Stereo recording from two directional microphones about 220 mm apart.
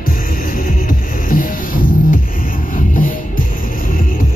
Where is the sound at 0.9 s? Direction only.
40° left (ahead or behind).